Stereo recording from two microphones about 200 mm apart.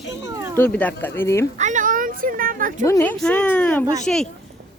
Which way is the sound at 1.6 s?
40° right (ahead or behind).